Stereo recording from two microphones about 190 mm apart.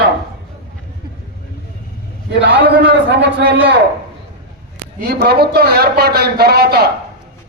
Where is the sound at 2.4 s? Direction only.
65° right (ahead or behind).